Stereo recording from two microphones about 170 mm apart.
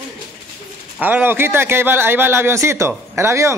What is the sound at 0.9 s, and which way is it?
Speech, 10° right (ahead or behind).